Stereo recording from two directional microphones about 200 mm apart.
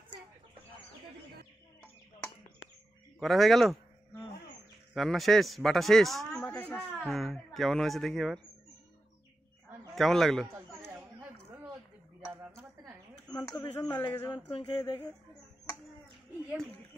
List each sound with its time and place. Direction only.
3.2 s a man's voice: centre (ahead or behind)
4.9 s a man's voice: centre (ahead or behind)
9.9 s a man's voice: centre (ahead or behind)
10.5 s chatter: 15° right (ahead or behind)
13.3 s a sound: 20° left (ahead or behind)
13.6 s a man's voice: 10° left (ahead or behind)
14.0 s speech: 20° left (ahead or behind)